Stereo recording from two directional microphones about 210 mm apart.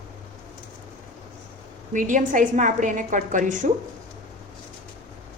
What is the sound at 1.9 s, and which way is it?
A woman's voice, 40° right (ahead or behind).